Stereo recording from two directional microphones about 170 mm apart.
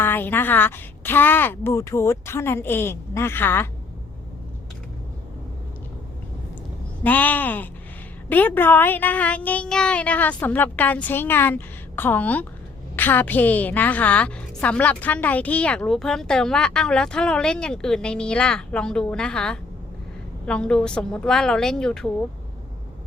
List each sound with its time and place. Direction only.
0.0 s a child's voice: 10° left (ahead or behind)
7.0 s a child's voice: 10° left (ahead or behind)